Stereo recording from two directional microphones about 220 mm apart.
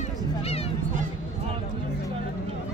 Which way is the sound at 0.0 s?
25° left (ahead or behind).